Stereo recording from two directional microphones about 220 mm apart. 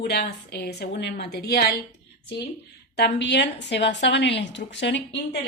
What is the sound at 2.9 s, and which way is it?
Speech, 50° left (ahead or behind).